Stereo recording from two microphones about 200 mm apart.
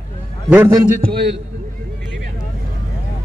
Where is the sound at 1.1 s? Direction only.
55° right (ahead or behind).